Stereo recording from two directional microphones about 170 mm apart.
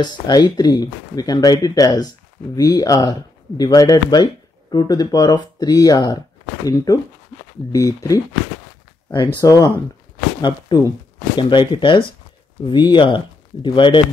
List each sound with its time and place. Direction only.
0.0 s speech: 25° left (ahead or behind)
10.7 s speech: 25° left (ahead or behind)